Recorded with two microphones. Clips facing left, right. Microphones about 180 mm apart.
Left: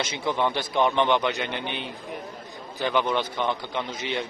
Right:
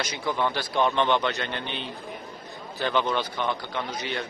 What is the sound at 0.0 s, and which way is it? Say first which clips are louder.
A man's voice: left 2 dB; 25° left (ahead or behind).